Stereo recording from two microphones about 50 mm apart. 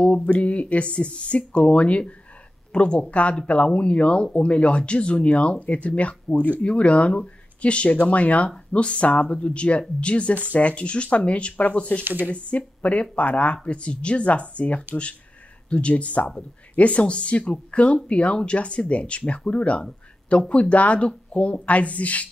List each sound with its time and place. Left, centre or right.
0.0 s speech: left
12.0 s speech: right
12.3 s speech: left